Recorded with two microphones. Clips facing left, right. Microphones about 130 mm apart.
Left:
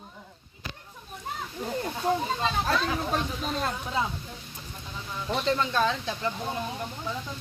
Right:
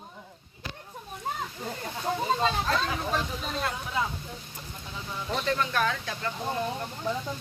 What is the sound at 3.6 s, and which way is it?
Speech, 30° left (ahead or behind).